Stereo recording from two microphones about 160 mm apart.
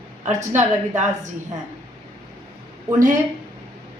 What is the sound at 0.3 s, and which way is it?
Speech, 50° right (ahead or behind).